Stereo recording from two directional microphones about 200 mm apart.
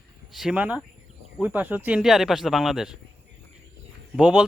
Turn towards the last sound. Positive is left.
turn(degrees=-5)  # may be behind; listen again after turning